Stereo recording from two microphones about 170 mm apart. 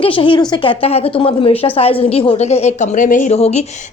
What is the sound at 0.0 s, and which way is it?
A woman's voice, 30° left (ahead or behind).